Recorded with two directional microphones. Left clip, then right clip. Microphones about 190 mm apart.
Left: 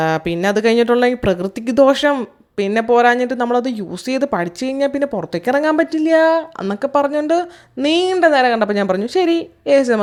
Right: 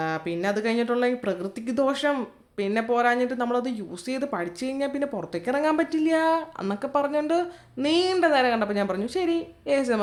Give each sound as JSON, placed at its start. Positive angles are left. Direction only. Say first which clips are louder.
{"t": 0.0, "sound": "speech", "louder": "left 10 dB", "side_deg": 45}